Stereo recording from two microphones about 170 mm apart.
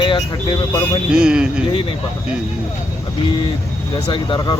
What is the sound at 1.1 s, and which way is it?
Speech, 5° right (ahead or behind).